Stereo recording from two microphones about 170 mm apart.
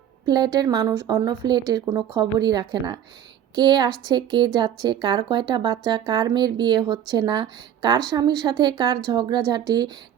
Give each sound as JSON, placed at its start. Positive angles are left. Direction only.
{"t": 0.3, "sound": "speech", "side_deg": -25}